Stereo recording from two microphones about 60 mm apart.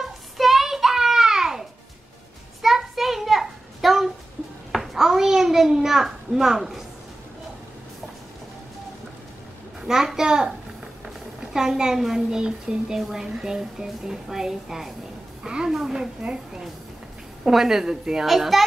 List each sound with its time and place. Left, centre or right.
0.0 s a sound: centre
9.8 s a child's voice: centre
11.5 s a woman's voice: centre
17.5 s a woman's voice: centre